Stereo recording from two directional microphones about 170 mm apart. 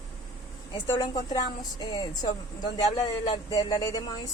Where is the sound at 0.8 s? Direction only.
20° left (ahead or behind).